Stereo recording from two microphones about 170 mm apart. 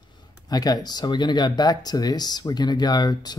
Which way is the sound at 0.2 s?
25° left (ahead or behind).